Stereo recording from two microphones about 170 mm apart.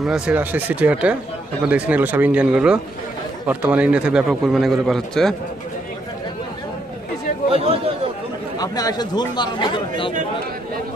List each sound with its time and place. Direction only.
0.0 s a man's voice: 5° right (ahead or behind)
7.5 s chatter: 35° right (ahead or behind)
8.5 s speech: 20° left (ahead or behind)